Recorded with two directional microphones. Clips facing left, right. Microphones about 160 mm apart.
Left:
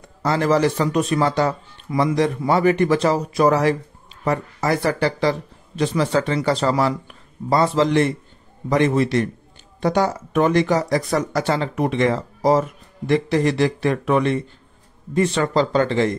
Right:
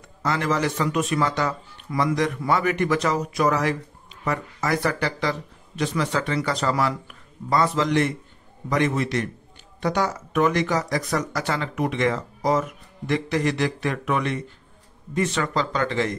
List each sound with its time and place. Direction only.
0.2 s speech: 35° left (ahead or behind)